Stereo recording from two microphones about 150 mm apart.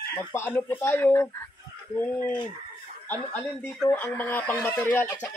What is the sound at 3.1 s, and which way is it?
Speech, 10° left (ahead or behind).